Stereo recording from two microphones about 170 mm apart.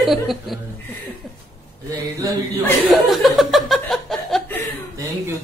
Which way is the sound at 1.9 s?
20° right (ahead or behind).